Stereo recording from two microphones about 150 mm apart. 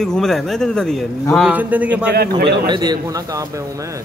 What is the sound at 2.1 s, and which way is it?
Speech, 90° right.